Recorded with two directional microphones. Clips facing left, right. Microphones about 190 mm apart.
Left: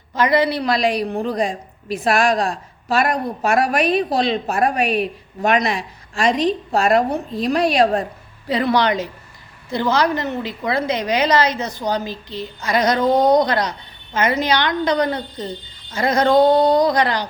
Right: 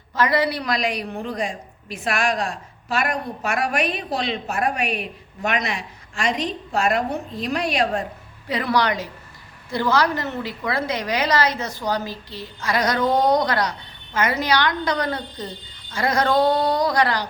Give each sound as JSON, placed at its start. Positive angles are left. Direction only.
{"t": 0.1, "sound": "a woman's voice", "side_deg": 20}